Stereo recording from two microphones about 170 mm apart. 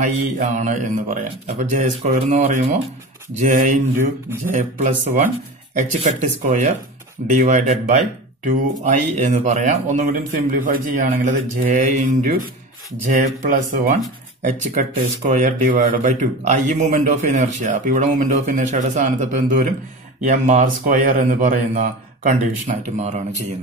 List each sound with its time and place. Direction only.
0.0 s speech: 45° right (ahead or behind)